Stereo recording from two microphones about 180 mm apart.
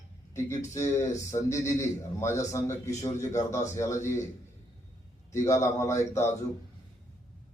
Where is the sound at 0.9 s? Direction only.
40° left (ahead or behind).